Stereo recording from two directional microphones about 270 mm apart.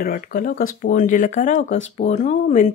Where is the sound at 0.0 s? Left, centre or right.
Left.